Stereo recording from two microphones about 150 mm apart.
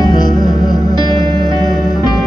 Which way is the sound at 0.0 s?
25° left (ahead or behind).